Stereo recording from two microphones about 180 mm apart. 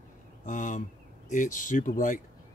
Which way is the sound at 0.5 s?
45° left (ahead or behind).